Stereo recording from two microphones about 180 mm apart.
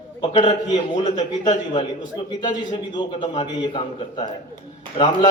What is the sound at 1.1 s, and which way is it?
Speech, 45° left (ahead or behind).